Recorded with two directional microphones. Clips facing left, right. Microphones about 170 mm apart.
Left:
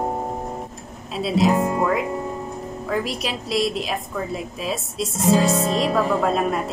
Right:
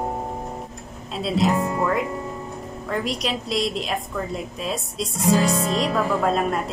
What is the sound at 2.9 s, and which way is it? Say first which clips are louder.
A woman's voice: even; centre (ahead or behind).